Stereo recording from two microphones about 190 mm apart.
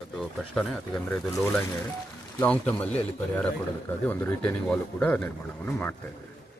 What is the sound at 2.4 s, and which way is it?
Speech, 5° left (ahead or behind).